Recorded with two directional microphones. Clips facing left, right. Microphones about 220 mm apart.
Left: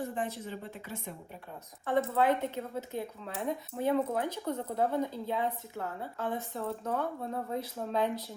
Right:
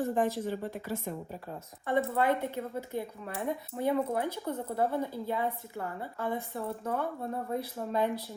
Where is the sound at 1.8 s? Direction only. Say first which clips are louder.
Even; 15° right (ahead or behind).